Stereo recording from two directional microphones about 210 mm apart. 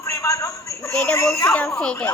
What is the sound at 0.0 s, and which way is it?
A child's voice, 15° left (ahead or behind).